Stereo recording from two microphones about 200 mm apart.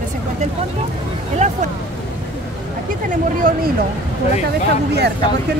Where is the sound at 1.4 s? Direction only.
35° right (ahead or behind).